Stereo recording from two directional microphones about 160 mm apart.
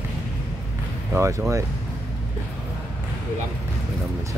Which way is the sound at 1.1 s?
15° right (ahead or behind).